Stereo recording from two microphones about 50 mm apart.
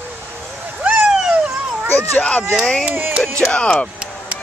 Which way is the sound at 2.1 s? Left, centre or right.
Left.